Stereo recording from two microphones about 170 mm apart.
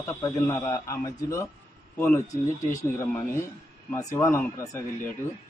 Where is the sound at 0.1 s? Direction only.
20° left (ahead or behind).